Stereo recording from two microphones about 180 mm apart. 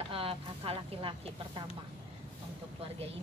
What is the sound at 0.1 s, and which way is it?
Speech, 30° right (ahead or behind).